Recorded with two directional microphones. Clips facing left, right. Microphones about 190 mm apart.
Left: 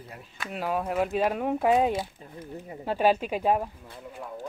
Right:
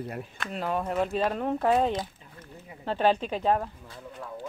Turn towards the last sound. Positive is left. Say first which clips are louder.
# left 1 dB
turn(degrees=10)  # may be behind; listen again after turning